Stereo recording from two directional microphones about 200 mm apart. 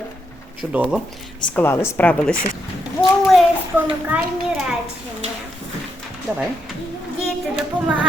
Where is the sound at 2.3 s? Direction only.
45° left (ahead or behind).